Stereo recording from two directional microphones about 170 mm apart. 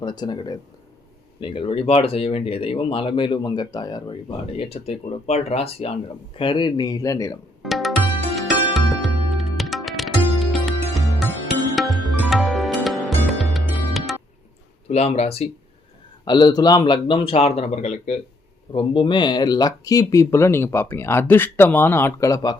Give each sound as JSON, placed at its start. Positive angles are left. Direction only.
{"t": 0.0, "sound": "speech", "side_deg": 25}
{"t": 7.6, "sound": "music", "side_deg": 0}
{"t": 14.8, "sound": "speech", "side_deg": 40}
{"t": 16.2, "sound": "speech", "side_deg": 25}
{"t": 18.7, "sound": "speech", "side_deg": 30}